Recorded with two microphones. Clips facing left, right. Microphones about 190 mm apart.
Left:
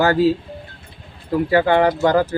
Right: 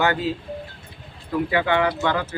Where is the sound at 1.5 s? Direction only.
40° left (ahead or behind).